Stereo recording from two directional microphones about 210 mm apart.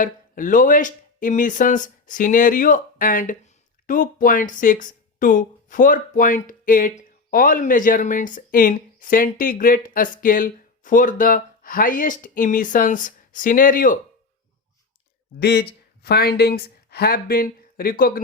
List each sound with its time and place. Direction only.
0.0 s speech: 40° left (ahead or behind)
15.4 s speech: 50° left (ahead or behind)